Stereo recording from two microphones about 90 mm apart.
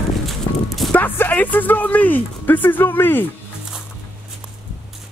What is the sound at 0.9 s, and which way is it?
Speech, 20° left (ahead or behind).